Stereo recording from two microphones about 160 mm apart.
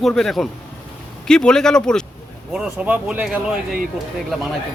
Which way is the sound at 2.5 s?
5° right (ahead or behind).